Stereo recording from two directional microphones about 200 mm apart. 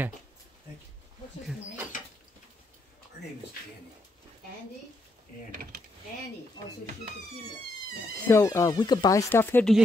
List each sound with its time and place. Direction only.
5.5 s mechanisms: 45° right (ahead or behind)
8.3 s speech: 15° left (ahead or behind)